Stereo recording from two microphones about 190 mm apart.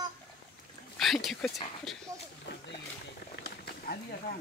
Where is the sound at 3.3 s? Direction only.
55° left (ahead or behind).